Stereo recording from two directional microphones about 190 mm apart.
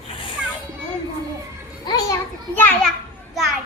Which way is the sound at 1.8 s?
20° left (ahead or behind).